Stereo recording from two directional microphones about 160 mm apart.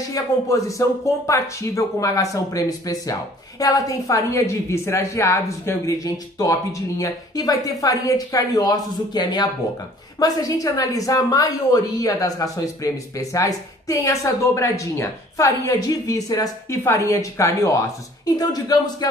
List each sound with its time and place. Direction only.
0.1 s speech: 20° left (ahead or behind)